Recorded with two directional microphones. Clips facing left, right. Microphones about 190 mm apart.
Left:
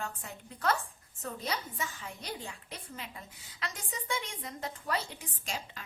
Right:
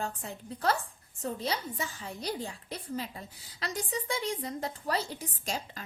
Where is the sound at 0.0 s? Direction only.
35° right (ahead or behind).